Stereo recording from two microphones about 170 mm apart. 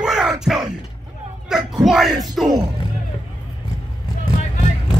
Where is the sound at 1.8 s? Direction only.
Centre (ahead or behind).